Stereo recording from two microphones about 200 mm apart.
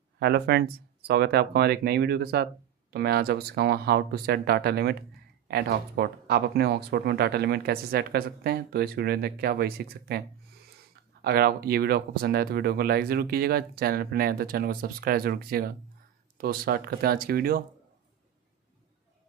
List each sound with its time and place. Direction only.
0.2 s speech: 55° right (ahead or behind)
11.2 s speech: 50° right (ahead or behind)